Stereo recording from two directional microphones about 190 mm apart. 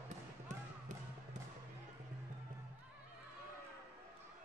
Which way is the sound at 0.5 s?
40° right (ahead or behind).